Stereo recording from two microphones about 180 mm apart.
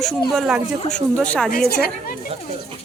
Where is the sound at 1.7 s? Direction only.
60° left (ahead or behind).